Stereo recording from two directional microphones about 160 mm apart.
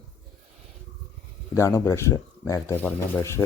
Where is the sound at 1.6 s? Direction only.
20° left (ahead or behind).